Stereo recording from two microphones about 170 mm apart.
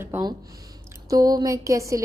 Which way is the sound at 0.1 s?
15° right (ahead or behind).